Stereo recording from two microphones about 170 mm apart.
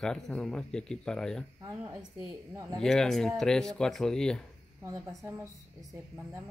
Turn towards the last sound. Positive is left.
turn(degrees=-20)  # may be behind; listen again after turning